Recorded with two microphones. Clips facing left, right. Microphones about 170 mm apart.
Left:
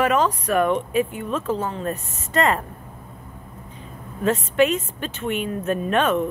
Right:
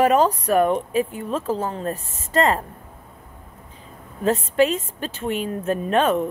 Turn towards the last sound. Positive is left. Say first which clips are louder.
# right 1 dB
turn(degrees=-30)  # may be behind; listen again after turning